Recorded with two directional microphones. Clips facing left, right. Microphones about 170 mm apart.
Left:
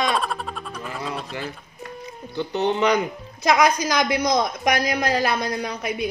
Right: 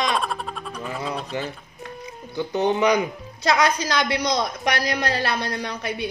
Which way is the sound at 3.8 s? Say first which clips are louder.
Left 2 dB; 15° left (ahead or behind).